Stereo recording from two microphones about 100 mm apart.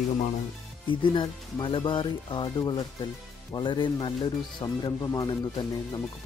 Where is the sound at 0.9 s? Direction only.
55° left (ahead or behind).